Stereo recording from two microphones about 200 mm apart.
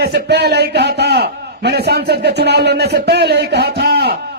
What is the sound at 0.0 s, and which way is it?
A man's voice, 55° right (ahead or behind).